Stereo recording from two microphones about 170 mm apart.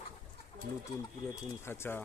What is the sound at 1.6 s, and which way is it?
Speech, 15° left (ahead or behind).